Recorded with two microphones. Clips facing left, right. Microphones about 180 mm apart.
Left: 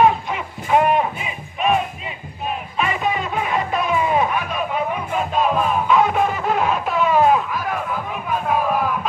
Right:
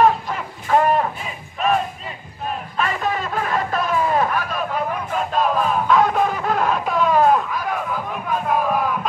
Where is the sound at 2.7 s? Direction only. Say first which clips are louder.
Left 1 dB; 10° left (ahead or behind).